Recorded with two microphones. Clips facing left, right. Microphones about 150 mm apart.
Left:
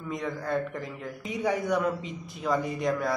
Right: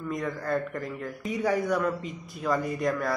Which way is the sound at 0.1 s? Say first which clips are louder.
Even; centre (ahead or behind).